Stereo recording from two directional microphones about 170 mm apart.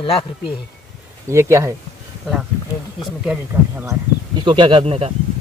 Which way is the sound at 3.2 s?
10° right (ahead or behind).